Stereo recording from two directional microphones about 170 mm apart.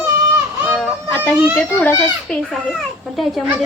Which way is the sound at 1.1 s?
10° left (ahead or behind).